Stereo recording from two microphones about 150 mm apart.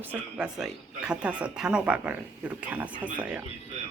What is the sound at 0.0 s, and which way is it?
Speech, 10° right (ahead or behind).